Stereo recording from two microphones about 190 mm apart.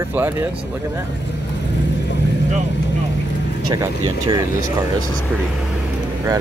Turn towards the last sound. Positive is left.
turn(degrees=-20)  # may be behind; listen again after turning